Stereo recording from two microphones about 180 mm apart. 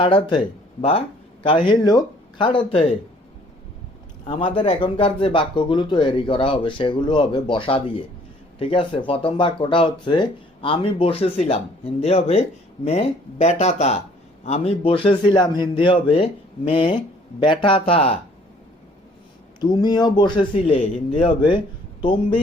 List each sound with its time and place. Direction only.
0.0 s speech: 30° left (ahead or behind)
4.3 s speech: 30° left (ahead or behind)
19.5 s speech: 25° left (ahead or behind)